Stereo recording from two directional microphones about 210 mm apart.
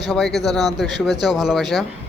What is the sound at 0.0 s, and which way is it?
Speech, centre (ahead or behind).